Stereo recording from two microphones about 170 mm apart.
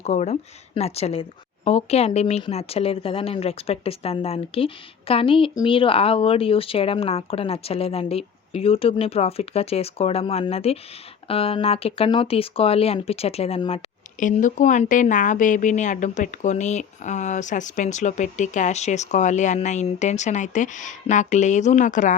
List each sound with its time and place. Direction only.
0.0 s a woman's voice: 40° left (ahead or behind)
14.2 s a woman's voice: 50° left (ahead or behind)